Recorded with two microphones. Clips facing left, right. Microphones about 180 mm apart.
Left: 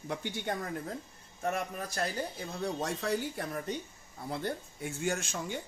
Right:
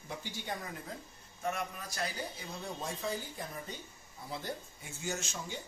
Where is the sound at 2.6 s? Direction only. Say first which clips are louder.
Left 6 dB; 75° left (ahead or behind).